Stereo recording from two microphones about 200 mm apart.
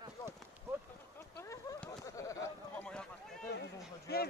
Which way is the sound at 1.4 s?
10° left (ahead or behind).